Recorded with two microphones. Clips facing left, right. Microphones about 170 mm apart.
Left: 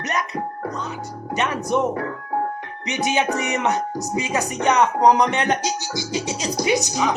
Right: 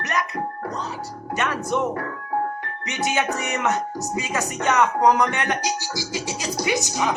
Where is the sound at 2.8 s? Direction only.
20° left (ahead or behind).